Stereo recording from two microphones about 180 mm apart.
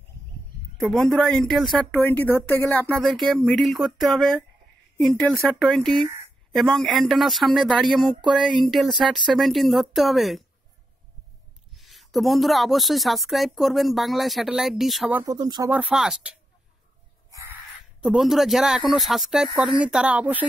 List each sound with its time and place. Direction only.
0.7 s a woman's voice: centre (ahead or behind)
11.7 s speech: centre (ahead or behind)
15.2 s speech: 20° right (ahead or behind)
15.7 s speech: 5° right (ahead or behind)
18.0 s speech: centre (ahead or behind)